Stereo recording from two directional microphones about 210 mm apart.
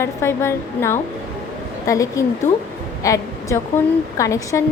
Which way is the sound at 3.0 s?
15° left (ahead or behind).